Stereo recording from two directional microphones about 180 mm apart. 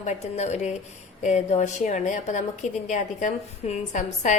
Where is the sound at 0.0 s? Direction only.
40° left (ahead or behind).